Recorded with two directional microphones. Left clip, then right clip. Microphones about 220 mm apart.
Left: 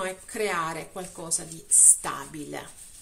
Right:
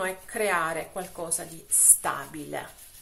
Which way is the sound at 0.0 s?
55° left (ahead or behind).